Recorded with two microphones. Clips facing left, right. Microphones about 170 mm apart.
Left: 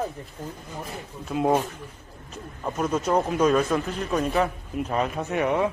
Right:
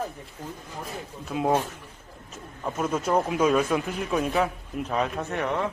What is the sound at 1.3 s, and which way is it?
Speech, centre (ahead or behind).